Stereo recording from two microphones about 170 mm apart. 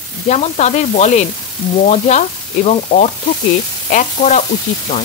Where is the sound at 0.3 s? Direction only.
40° left (ahead or behind).